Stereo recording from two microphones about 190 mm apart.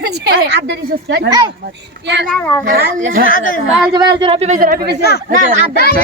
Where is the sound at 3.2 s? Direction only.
45° left (ahead or behind).